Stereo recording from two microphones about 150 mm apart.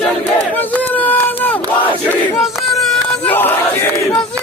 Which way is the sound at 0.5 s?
10° left (ahead or behind).